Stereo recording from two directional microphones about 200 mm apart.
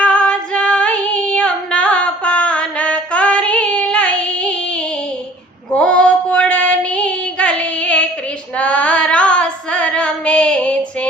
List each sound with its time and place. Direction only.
0.0 s female singing: 5° left (ahead or behind)
5.7 s child singing: 5° left (ahead or behind)
8.5 s female singing: 5° left (ahead or behind)